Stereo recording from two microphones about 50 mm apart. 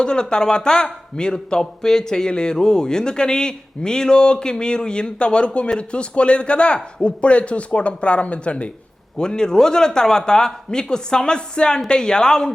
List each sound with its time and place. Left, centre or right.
0.0 s a man's voice: centre
9.1 s a man's voice: centre